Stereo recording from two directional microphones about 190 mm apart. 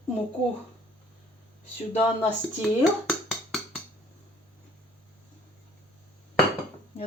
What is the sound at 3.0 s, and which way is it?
Music, centre (ahead or behind).